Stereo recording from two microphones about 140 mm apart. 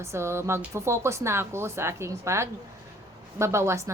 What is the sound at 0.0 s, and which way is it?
A woman's voice, 20° right (ahead or behind).